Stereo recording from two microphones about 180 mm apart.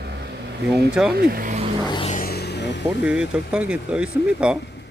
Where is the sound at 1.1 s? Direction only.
55° right (ahead or behind).